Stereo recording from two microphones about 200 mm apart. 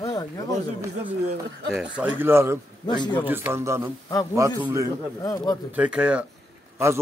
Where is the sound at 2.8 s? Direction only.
20° left (ahead or behind).